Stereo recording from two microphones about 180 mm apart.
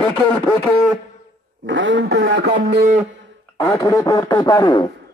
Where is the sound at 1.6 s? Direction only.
90° right.